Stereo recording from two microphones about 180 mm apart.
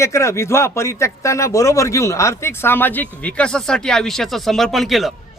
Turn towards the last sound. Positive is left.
turn(degrees=0)  # may be behind; listen again after turning